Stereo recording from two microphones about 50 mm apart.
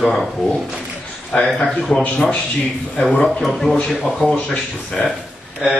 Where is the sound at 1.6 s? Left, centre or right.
Centre.